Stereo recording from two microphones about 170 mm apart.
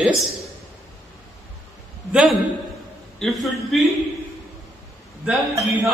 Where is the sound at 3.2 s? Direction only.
Centre (ahead or behind).